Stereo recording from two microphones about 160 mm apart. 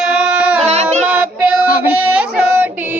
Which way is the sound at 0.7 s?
40° right (ahead or behind).